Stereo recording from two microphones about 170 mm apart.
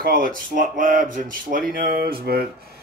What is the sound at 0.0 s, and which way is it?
Speech, 55° right (ahead or behind).